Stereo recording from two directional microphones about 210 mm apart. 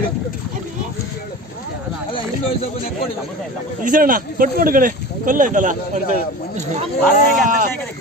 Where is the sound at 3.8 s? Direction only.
40° right (ahead or behind).